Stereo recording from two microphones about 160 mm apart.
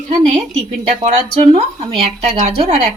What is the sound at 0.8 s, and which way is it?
Speech, 45° right (ahead or behind).